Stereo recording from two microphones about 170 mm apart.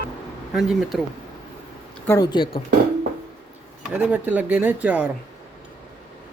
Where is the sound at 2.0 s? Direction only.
20° left (ahead or behind).